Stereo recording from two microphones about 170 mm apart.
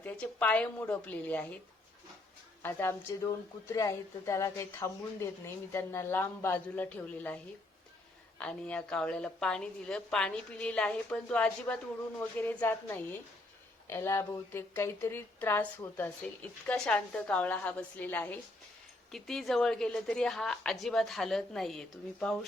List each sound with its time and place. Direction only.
0.0 s a woman's voice: 10° left (ahead or behind)
2.6 s a woman's voice: 15° left (ahead or behind)
8.4 s a woman's voice: 5° left (ahead or behind)